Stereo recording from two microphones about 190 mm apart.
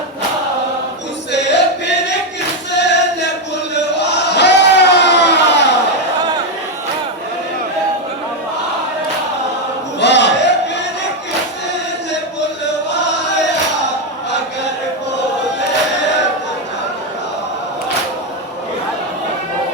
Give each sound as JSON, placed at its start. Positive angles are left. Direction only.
{"t": 1.3, "sound": "music", "side_deg": 65}
{"t": 2.7, "sound": "choir", "side_deg": 65}
{"t": 3.8, "sound": "crowd", "side_deg": 65}
{"t": 10.0, "sound": "a sound", "side_deg": 65}
{"t": 12.9, "sound": "chant", "side_deg": 65}